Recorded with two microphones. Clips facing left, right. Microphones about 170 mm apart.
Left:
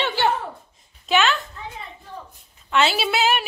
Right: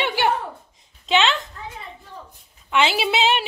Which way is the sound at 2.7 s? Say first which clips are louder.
Even; 15° right (ahead or behind).